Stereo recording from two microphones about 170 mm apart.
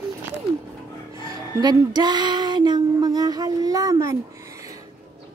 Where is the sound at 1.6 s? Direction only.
25° right (ahead or behind).